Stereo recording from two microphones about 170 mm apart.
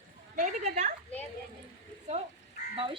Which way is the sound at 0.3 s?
45° right (ahead or behind).